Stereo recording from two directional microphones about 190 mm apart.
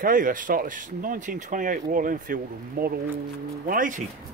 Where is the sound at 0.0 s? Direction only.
45° right (ahead or behind).